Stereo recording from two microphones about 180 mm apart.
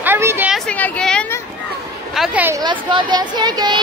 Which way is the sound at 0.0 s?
10° right (ahead or behind).